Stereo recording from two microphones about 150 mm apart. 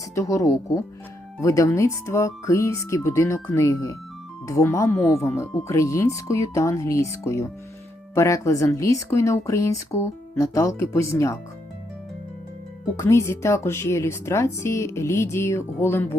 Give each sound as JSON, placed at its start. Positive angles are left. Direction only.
{"t": 0.1, "sound": "speech", "side_deg": 20}
{"t": 13.0, "sound": "a woman's voice", "side_deg": 20}